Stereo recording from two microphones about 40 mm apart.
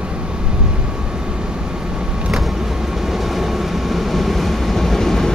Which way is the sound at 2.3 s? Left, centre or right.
Centre.